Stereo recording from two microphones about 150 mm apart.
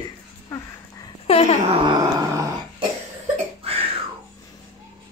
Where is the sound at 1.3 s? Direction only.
45° left (ahead or behind).